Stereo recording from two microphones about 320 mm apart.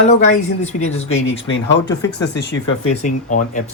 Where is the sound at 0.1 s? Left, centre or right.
Left.